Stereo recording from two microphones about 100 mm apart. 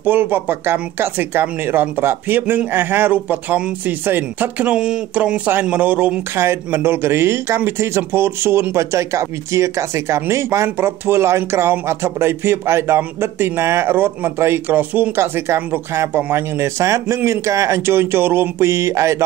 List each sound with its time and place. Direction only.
0.0 s speech: 20° right (ahead or behind)
6.3 s speech: 25° right (ahead or behind)